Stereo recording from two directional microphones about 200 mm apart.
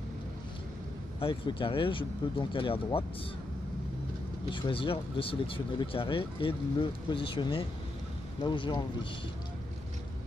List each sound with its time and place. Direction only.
1.2 s speech: 25° left (ahead or behind)
4.5 s speech: 25° left (ahead or behind)